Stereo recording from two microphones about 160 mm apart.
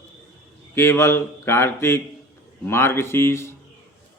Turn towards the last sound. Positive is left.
turn(degrees=15)  # may be behind; listen again after turning